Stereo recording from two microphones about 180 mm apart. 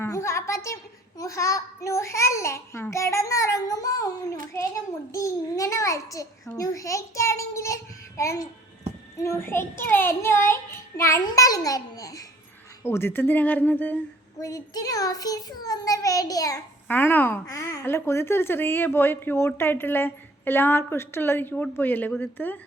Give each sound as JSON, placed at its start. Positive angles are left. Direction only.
{"t": 0.0, "sound": "a woman's voice", "side_deg": 15}